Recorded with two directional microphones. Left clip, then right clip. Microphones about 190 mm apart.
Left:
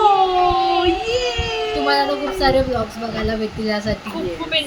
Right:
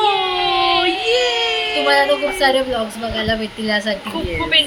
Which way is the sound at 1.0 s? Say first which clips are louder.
Right 4 dB; 25° left (ahead or behind).